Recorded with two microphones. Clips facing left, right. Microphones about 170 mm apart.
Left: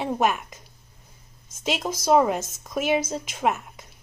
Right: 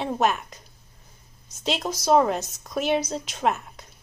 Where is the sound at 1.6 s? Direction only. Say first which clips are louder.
Even; 10° left (ahead or behind).